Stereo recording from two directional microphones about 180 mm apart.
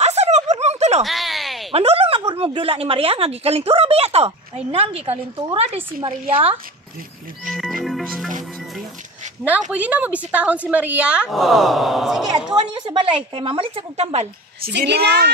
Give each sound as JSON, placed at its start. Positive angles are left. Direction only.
{"t": 0.0, "sound": "a sound", "side_deg": -40}
{"t": 1.0, "sound": "a sound", "side_deg": 0}
{"t": 1.7, "sound": "a woman's voice", "side_deg": -30}
{"t": 7.5, "sound": "music", "side_deg": 0}
{"t": 9.5, "sound": "a woman's voice", "side_deg": -10}
{"t": 12.7, "sound": "speech", "side_deg": -25}
{"t": 14.6, "sound": "a woman's voice", "side_deg": -70}